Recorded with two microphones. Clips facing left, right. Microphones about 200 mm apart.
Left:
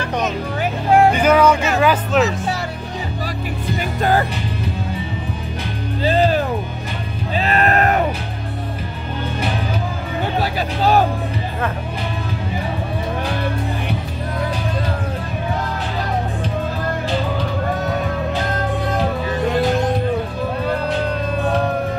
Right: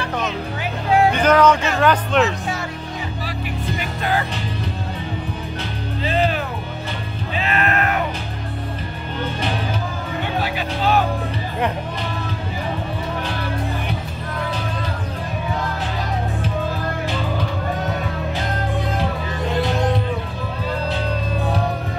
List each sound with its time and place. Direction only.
1.1 s music: 10° left (ahead or behind)
1.8 s speech: 5° left (ahead or behind)
3.7 s music: 35° left (ahead or behind)
6.0 s music: 35° left (ahead or behind)
10.4 s music: 35° left (ahead or behind)